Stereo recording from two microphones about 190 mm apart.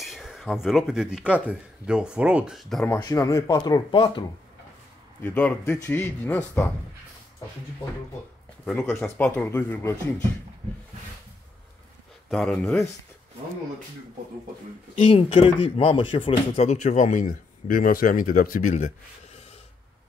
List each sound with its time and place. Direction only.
0.0 s speech: centre (ahead or behind)
2.9 s speech: 20° left (ahead or behind)
5.2 s speech: 10° left (ahead or behind)
8.6 s speech: centre (ahead or behind)
12.3 s speech: 5° left (ahead or behind)
15.0 s speech: 30° left (ahead or behind)